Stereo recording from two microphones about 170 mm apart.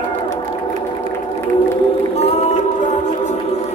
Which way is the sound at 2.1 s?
35° left (ahead or behind).